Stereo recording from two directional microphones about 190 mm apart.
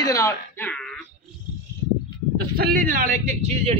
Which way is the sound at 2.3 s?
50° right (ahead or behind).